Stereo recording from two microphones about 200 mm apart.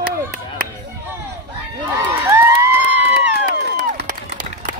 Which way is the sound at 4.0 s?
50° right (ahead or behind).